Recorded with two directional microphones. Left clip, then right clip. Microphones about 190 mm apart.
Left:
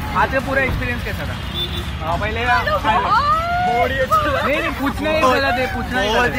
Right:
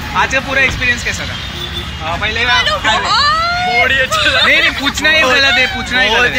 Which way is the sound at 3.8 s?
5° left (ahead or behind).